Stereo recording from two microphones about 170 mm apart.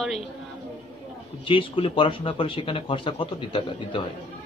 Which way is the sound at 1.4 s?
30° left (ahead or behind).